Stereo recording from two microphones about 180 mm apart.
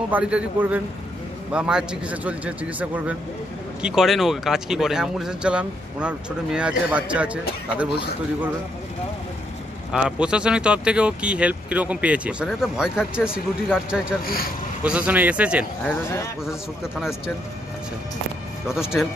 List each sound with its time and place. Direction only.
0.1 s a man's voice: 5° right (ahead or behind)
9.9 s speech: 5° right (ahead or behind)
14.2 s speech: 55° left (ahead or behind)
14.8 s a man's voice: 10° right (ahead or behind)
18.7 s speech: 5° right (ahead or behind)